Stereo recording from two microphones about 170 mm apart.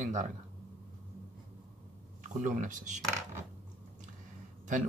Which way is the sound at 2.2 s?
50° right (ahead or behind).